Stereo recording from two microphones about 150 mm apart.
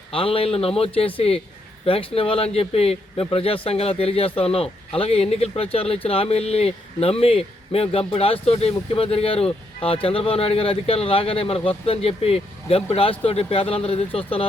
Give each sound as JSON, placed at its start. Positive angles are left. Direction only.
{"t": 0.1, "sound": "speech", "side_deg": 40}